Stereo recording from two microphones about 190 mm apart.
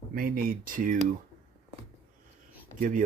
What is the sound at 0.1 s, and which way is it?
Speech, 50° right (ahead or behind).